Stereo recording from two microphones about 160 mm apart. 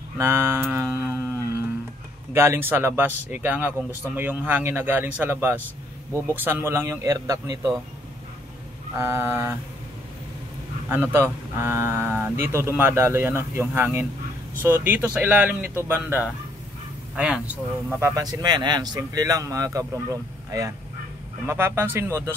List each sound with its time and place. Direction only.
0.2 s mantra: 15° right (ahead or behind)
2.3 s speech: 15° right (ahead or behind)
8.9 s speech: 15° right (ahead or behind)
10.9 s speech: 15° right (ahead or behind)
18.1 s speech: 25° right (ahead or behind)
21.5 s speech: 15° right (ahead or behind)